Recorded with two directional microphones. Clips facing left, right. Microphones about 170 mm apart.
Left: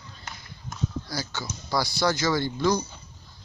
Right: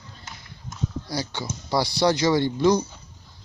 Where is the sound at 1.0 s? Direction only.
30° right (ahead or behind).